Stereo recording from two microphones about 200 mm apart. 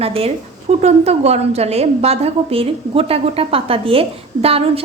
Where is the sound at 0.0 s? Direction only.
30° right (ahead or behind).